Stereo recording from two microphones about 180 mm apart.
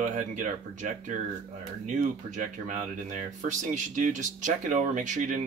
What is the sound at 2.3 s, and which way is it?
Speech, 45° right (ahead or behind).